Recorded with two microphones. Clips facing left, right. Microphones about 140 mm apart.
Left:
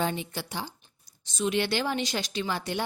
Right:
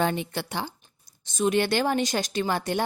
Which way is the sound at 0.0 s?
60° right (ahead or behind).